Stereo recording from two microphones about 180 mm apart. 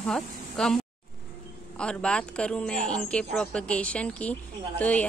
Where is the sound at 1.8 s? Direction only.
5° left (ahead or behind).